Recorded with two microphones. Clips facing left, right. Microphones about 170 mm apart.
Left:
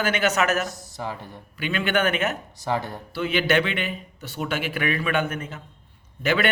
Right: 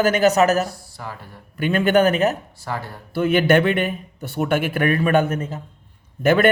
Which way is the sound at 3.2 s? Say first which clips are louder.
Right 6 dB; 50° right (ahead or behind).